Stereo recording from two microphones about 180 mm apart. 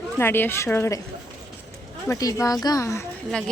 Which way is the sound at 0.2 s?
10° left (ahead or behind).